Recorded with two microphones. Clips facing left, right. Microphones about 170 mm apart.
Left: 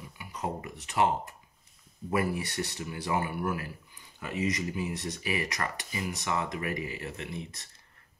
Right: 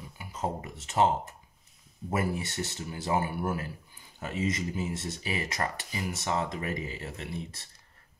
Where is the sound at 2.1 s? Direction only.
25° right (ahead or behind).